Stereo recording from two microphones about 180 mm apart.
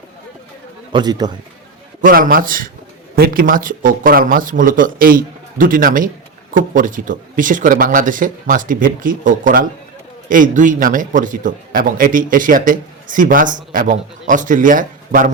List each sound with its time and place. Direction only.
0.9 s a man's voice: 25° right (ahead or behind)
2.0 s a man's voice: 50° right (ahead or behind)